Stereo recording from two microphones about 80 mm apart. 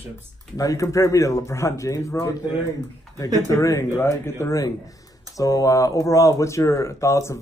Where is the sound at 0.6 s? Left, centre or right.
Left.